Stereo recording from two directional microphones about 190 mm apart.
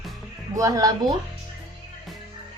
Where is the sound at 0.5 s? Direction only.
15° right (ahead or behind).